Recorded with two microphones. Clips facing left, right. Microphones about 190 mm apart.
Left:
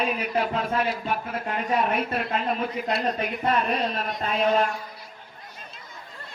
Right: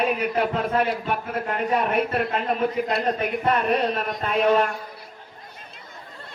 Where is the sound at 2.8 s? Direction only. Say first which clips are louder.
Right 3 dB; 55° right (ahead or behind).